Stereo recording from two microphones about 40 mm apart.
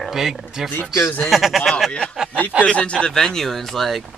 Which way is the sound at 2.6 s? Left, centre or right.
Left.